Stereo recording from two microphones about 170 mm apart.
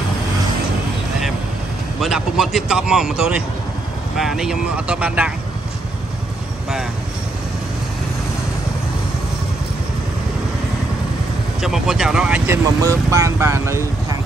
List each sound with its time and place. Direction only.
2.0 s speech: centre (ahead or behind)
11.6 s speech: centre (ahead or behind)
12.8 s speech: 20° right (ahead or behind)